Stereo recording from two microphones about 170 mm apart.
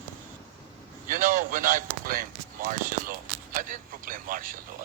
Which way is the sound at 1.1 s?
50° right (ahead or behind).